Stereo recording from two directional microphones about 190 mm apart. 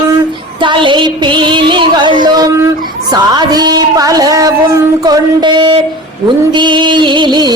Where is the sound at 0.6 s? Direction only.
25° right (ahead or behind).